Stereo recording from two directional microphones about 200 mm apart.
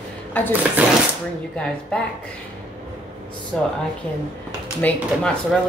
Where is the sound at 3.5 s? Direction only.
5° left (ahead or behind).